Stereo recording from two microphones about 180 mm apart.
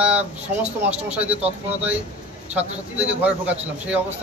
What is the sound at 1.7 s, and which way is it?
Speech, 10° right (ahead or behind).